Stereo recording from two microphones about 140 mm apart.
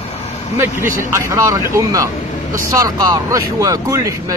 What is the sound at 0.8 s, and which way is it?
Speech, 20° right (ahead or behind).